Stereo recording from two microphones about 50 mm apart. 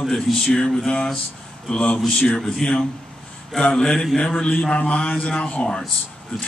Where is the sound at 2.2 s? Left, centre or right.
Left.